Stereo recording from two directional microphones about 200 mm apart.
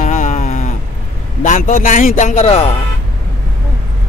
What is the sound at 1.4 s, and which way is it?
A man's voice, 40° left (ahead or behind).